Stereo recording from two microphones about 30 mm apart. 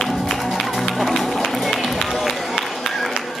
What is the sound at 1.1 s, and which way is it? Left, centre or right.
Music, centre.